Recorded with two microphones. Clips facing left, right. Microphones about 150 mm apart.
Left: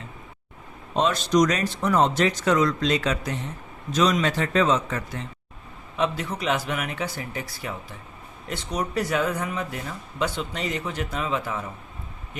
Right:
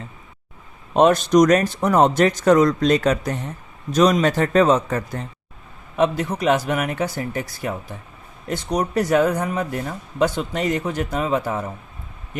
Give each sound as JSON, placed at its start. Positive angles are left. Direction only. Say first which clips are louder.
{"t": 0.9, "sound": "speech", "louder": "right 6 dB", "side_deg": -50}